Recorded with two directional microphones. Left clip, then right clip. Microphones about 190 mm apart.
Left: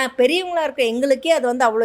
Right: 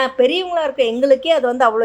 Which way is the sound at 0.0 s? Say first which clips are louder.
Right 2 dB; 35° left (ahead or behind).